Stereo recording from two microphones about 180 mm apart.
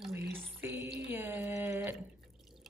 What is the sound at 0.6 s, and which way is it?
Speech, 15° right (ahead or behind).